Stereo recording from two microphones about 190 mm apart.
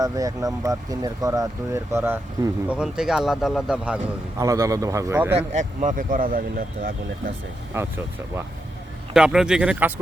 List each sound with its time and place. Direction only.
0.0 s speech: 20° right (ahead or behind)
4.4 s speech: 15° right (ahead or behind)
5.4 s speech: 40° right (ahead or behind)
7.7 s speech: 10° right (ahead or behind)